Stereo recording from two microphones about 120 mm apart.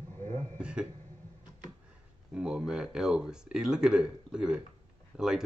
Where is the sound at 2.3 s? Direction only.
5° right (ahead or behind).